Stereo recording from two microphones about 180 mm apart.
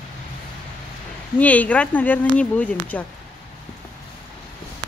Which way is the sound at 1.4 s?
10° left (ahead or behind).